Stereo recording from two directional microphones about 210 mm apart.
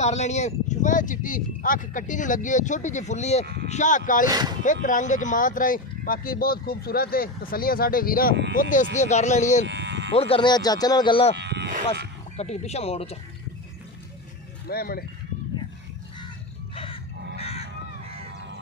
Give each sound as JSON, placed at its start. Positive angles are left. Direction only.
{"t": 0.0, "sound": "speech", "side_deg": 30}
{"t": 4.3, "sound": "speech", "side_deg": -20}
{"t": 4.8, "sound": "speech", "side_deg": 35}
{"t": 9.7, "sound": "sheep", "side_deg": -55}
{"t": 10.1, "sound": "speech", "side_deg": 25}
{"t": 11.3, "sound": "livestock", "side_deg": -55}
{"t": 12.4, "sound": "speech", "side_deg": 30}
{"t": 14.7, "sound": "speech", "side_deg": 45}
{"t": 16.7, "sound": "music", "side_deg": 25}
{"t": 17.4, "sound": "crow", "side_deg": 30}